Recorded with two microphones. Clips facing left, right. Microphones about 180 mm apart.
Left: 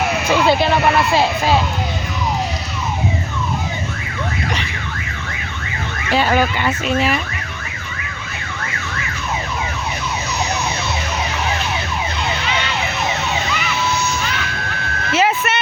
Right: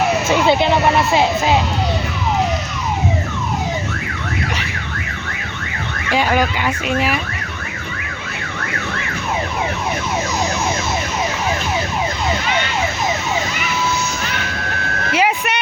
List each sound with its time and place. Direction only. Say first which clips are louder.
0.3 s speech: left 1 dB; 20° right (ahead or behind)
6.1 s speech: left 1 dB; 10° right (ahead or behind)
15.1 s vehicle: left 1 dB; 15° right (ahead or behind)